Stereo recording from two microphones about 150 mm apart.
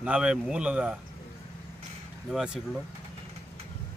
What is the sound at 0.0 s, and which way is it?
Speech, 5° right (ahead or behind).